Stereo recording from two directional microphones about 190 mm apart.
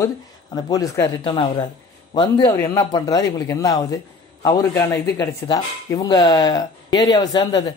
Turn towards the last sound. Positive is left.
turn(degrees=20)  # may be behind; listen again after turning